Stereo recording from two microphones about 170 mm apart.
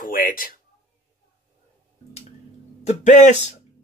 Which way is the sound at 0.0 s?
55° left (ahead or behind).